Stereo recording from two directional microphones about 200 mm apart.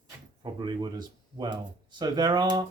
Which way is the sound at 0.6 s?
20° right (ahead or behind).